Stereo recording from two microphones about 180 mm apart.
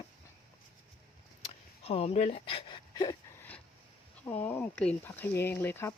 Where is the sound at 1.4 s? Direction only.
35° left (ahead or behind).